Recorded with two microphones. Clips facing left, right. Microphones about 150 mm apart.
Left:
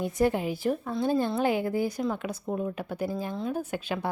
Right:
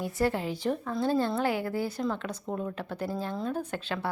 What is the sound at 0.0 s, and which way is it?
Speech, 15° left (ahead or behind).